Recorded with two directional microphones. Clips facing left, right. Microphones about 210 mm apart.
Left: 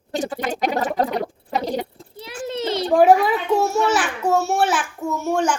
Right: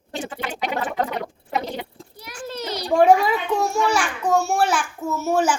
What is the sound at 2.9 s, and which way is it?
A child's voice, centre (ahead or behind).